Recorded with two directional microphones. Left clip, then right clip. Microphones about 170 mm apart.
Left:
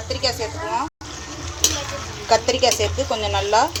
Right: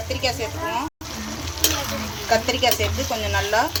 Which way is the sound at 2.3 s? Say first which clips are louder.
Left 3 dB; 5° left (ahead or behind).